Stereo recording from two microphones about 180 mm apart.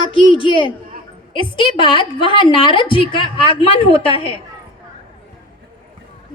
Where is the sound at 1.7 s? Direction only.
25° left (ahead or behind).